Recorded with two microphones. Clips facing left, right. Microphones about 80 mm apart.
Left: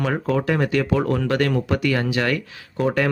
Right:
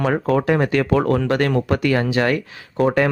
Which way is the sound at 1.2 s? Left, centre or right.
Right.